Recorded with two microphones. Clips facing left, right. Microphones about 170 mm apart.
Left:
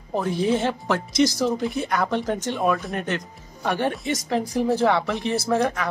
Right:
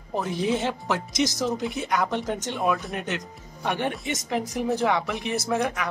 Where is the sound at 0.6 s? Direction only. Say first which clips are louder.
Left 3 dB; 15° right (ahead or behind).